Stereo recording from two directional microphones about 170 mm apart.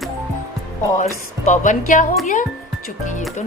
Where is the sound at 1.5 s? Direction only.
50° left (ahead or behind).